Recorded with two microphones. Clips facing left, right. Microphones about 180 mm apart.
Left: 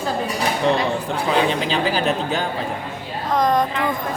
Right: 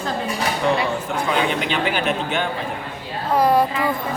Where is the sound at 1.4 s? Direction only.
35° left (ahead or behind).